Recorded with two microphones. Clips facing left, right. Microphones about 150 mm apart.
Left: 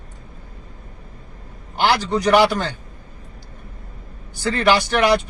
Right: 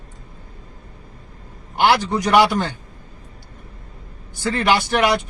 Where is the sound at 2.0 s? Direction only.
15° right (ahead or behind).